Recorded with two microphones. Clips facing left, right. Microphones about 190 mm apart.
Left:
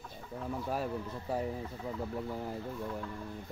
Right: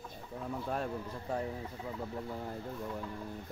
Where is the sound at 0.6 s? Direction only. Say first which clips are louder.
Left 1 dB; 5° left (ahead or behind).